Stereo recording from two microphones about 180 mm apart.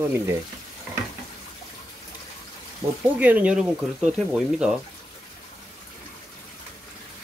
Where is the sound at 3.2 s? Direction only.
10° right (ahead or behind).